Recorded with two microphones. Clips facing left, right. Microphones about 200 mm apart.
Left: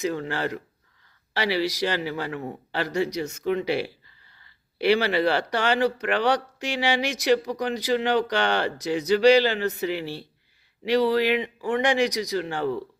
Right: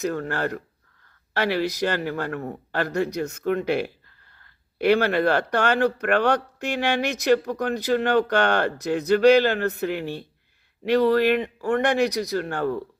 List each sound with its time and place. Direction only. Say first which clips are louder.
0.0 s speech: right 1 dB; 50° right (ahead or behind)